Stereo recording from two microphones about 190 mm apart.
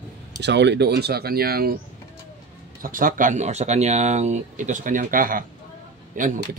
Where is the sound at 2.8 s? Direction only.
45° right (ahead or behind).